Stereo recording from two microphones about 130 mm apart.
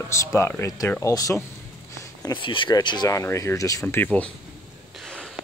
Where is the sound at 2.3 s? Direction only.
40° left (ahead or behind).